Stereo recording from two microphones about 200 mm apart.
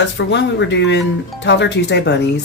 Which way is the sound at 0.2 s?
60° left (ahead or behind).